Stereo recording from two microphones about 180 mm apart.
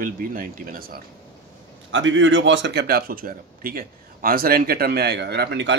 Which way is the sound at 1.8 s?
90° right.